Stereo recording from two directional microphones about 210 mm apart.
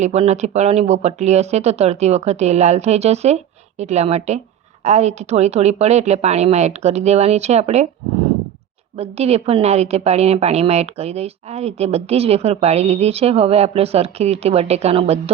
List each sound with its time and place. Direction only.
0.0 s speech: 30° right (ahead or behind)
9.0 s a woman's voice: 30° right (ahead or behind)